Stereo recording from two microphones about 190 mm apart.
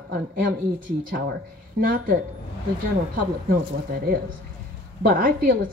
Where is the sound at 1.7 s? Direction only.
50° right (ahead or behind).